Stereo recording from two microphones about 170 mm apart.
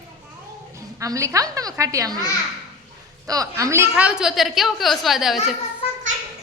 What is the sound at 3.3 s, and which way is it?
Speech, 20° right (ahead or behind).